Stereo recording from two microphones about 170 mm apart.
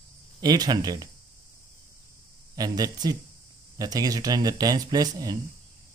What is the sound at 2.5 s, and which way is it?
Speech, 25° right (ahead or behind).